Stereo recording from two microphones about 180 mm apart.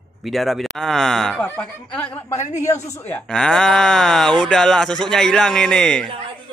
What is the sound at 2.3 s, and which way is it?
Speech, 40° left (ahead or behind).